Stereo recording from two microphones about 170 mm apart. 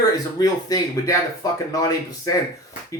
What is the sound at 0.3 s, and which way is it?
Speech, 20° left (ahead or behind).